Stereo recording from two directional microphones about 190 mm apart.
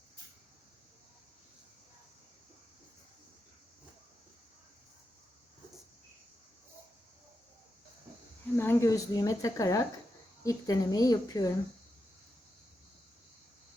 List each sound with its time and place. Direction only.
8.5 s speech: 15° left (ahead or behind)